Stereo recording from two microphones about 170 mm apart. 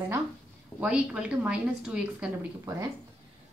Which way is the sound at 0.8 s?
5° right (ahead or behind).